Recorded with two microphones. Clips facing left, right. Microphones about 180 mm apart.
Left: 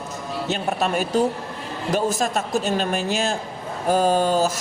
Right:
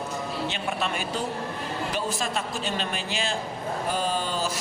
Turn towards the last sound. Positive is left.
turn(degrees=45)  # may be behind; listen again after turning